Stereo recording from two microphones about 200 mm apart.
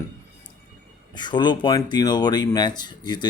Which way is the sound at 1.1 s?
20° left (ahead or behind).